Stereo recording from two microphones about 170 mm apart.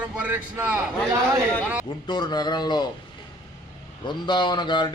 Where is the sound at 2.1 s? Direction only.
25° left (ahead or behind).